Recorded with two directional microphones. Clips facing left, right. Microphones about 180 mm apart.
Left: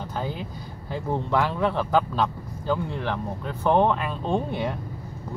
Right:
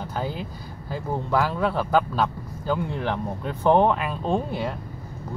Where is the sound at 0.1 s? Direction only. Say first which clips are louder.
Right 1 dB; 10° right (ahead or behind).